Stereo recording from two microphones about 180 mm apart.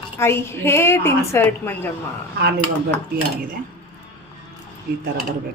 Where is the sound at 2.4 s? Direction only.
65° right (ahead or behind).